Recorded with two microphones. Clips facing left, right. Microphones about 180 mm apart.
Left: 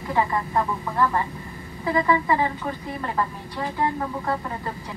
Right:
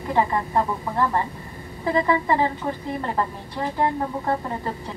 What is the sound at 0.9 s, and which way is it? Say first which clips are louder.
Speech: even; 25° right (ahead or behind).